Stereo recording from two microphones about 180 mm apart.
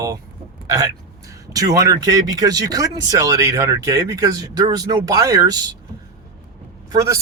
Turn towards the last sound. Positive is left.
turn(degrees=-15)  # may be behind; listen again after turning